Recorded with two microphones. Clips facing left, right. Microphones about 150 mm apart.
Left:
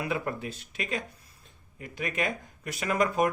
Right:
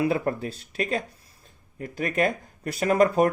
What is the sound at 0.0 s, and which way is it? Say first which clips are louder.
Speech: right 7 dB; 35° right (ahead or behind).